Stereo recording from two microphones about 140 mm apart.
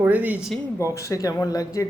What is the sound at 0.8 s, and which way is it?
A man's voice, 20° left (ahead or behind).